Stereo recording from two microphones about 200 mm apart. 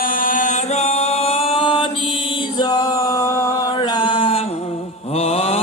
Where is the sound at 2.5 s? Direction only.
20° left (ahead or behind).